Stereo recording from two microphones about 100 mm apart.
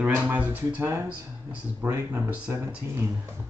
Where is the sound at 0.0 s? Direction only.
10° right (ahead or behind); by 2.7 s 25° right (ahead or behind).